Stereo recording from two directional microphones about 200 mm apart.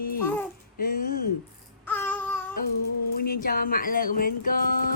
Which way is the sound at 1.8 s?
10° left (ahead or behind).